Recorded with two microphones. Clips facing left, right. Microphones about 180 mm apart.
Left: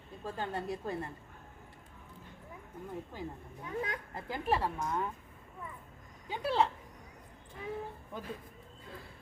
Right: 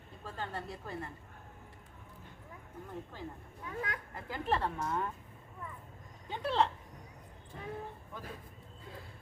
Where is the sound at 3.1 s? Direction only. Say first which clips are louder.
Left 3 dB; 15° left (ahead or behind).